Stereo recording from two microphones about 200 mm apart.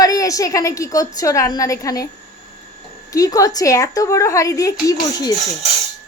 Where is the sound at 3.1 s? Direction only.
15° left (ahead or behind).